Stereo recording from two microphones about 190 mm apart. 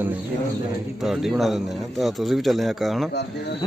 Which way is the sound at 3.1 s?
60° left (ahead or behind).